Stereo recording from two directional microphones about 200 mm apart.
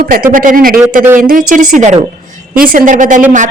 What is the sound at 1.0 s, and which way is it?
Speech, 10° right (ahead or behind).